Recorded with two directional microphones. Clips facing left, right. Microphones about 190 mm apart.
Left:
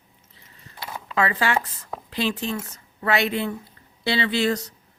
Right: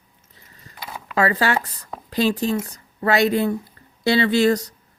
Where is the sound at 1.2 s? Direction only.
40° right (ahead or behind).